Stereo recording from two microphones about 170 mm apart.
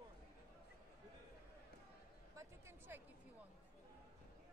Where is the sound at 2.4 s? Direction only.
15° right (ahead or behind).